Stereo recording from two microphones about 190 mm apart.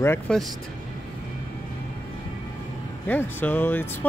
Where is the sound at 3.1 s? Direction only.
10° left (ahead or behind).